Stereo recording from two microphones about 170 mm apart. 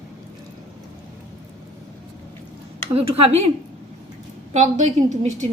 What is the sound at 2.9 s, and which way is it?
Speech, 35° right (ahead or behind).